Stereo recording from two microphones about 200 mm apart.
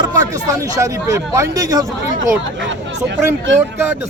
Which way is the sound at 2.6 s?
65° right (ahead or behind).